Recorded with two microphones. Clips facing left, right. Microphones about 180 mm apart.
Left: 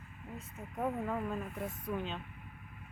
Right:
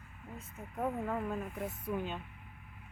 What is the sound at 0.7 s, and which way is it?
Speech, centre (ahead or behind).